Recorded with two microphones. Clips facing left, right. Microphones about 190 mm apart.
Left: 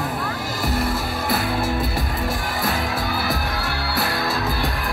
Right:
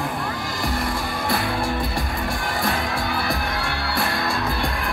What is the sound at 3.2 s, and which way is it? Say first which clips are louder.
Music: even; 5° left (ahead or behind).